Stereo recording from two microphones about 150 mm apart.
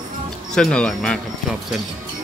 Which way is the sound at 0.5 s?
5° left (ahead or behind).